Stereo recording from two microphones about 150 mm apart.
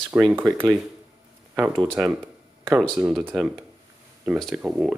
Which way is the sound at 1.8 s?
5° right (ahead or behind).